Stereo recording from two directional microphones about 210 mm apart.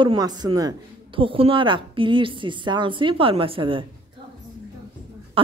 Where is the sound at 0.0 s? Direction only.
20° right (ahead or behind).